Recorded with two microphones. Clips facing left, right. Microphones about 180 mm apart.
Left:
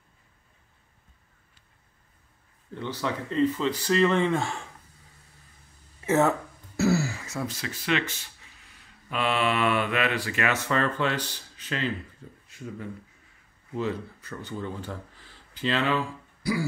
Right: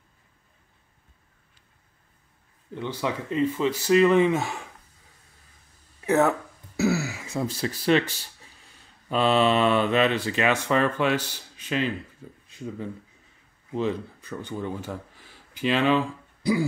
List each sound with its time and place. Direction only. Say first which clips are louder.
3.0 s speech: even; 15° right (ahead or behind)
5.9 s speech: right 1 dB; centre (ahead or behind)
6.8 s throat clearing: even; centre (ahead or behind)
7.4 s speech: right 8 dB; 35° right (ahead or behind); by 16.0 s 15° right (ahead or behind)